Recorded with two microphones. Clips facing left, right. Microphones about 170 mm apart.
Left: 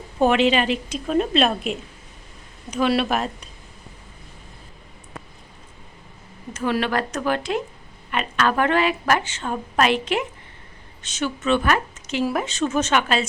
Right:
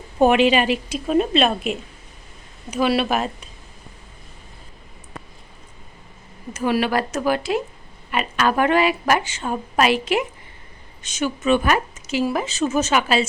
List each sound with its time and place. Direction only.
0.2 s speech: 15° right (ahead or behind)
6.5 s speech: 10° right (ahead or behind)